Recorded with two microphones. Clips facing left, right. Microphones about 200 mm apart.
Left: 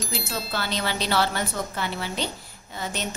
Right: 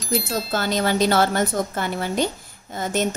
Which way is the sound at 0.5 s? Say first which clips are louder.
Right 8 dB; 45° right (ahead or behind).